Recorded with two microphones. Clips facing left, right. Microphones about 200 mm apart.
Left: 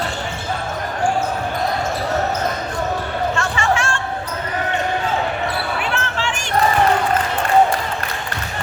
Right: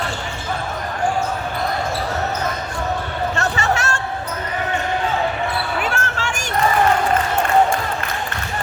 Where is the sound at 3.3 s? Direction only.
40° right (ahead or behind).